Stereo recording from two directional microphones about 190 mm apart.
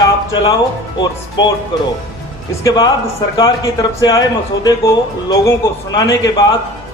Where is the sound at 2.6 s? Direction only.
20° left (ahead or behind).